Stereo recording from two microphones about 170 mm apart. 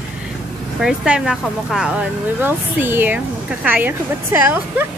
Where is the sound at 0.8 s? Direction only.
5° right (ahead or behind).